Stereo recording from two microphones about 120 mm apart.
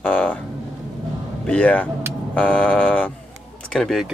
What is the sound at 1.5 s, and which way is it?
Speech, 10° left (ahead or behind).